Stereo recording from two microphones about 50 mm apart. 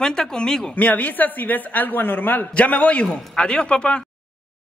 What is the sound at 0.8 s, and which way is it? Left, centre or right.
A woman's voice, left.